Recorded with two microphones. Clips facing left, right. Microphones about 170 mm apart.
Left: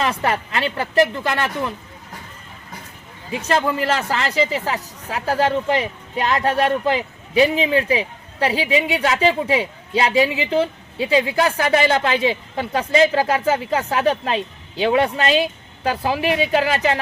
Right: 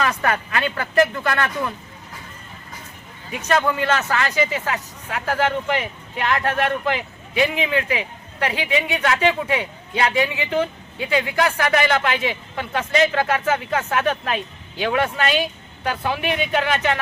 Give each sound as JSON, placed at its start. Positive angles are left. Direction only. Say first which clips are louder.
{"t": 0.0, "sound": "speech", "louder": "left 1 dB", "side_deg": 25}
{"t": 3.3, "sound": "speech", "louder": "left 1 dB", "side_deg": 30}